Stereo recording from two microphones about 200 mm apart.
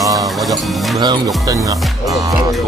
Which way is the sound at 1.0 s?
20° right (ahead or behind).